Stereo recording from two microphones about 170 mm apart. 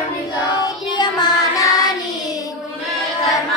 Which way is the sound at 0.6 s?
25° left (ahead or behind).